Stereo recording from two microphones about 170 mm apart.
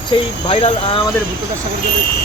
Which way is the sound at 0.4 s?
35° left (ahead or behind).